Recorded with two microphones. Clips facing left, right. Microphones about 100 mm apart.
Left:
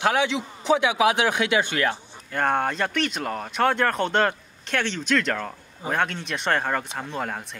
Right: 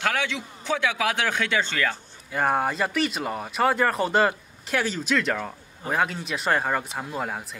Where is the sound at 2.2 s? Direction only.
5° right (ahead or behind).